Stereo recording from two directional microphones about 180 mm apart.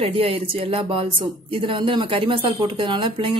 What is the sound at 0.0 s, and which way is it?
Speech, 30° right (ahead or behind).